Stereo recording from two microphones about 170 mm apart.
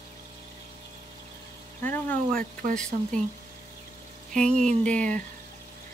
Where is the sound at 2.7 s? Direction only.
5° left (ahead or behind).